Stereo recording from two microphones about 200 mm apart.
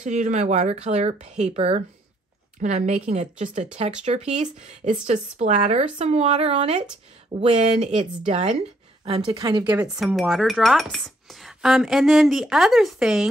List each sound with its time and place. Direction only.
0.0 s a woman's voice: 35° right (ahead or behind)
9.7 s speech: 5° right (ahead or behind)